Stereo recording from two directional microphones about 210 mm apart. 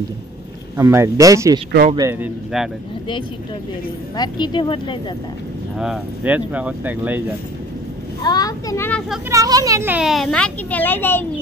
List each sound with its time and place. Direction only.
0.7 s speech: 15° right (ahead or behind)
4.2 s speech: 20° left (ahead or behind)
5.8 s speech: 5° right (ahead or behind)
8.2 s a child's voice: 20° left (ahead or behind)
9.3 s a child's voice: 15° right (ahead or behind); by 11.2 s 10° left (ahead or behind)